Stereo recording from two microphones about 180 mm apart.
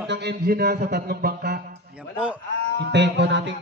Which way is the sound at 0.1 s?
65° right (ahead or behind).